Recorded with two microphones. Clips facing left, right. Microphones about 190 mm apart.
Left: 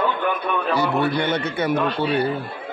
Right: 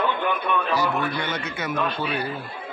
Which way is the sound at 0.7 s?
30° left (ahead or behind).